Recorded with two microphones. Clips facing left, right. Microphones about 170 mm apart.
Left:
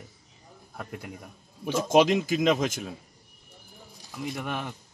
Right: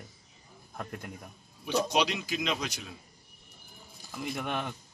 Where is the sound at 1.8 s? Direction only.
45° left (ahead or behind).